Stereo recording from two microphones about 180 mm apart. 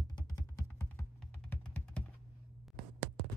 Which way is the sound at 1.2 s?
10° left (ahead or behind).